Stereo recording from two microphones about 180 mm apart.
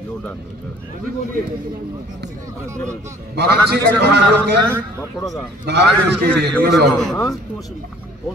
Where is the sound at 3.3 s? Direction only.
65° right (ahead or behind).